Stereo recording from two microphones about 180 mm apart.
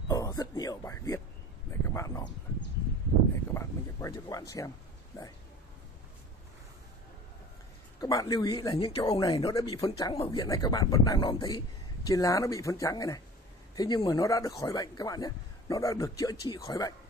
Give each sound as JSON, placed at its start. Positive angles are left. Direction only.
{"t": 0.1, "sound": "a sound", "side_deg": 20}
{"t": 3.5, "sound": "speech", "side_deg": 15}
{"t": 8.0, "sound": "speech", "side_deg": 20}
{"t": 9.3, "sound": "speech", "side_deg": 20}